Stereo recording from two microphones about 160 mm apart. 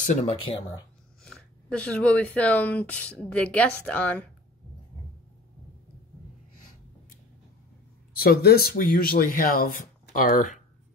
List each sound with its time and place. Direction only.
0.0 s speech: 50° left (ahead or behind)
1.2 s speech: 5° left (ahead or behind)
8.2 s speech: 70° left (ahead or behind); by 10.6 s 55° left (ahead or behind)